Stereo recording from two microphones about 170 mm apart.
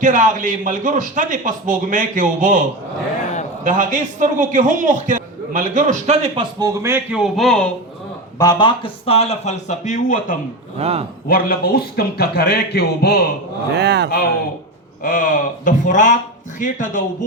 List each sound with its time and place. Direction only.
0.0 s a man's voice: 50° right (ahead or behind); by 7.7 s centre (ahead or behind)
8.4 s speech: 25° left (ahead or behind); by 10.3 s 50° left (ahead or behind)
10.8 s speech: 40° right (ahead or behind)
11.3 s a man's voice: 60° left (ahead or behind)
13.7 s speech: 75° right (ahead or behind)
15.0 s speech: 55° left (ahead or behind)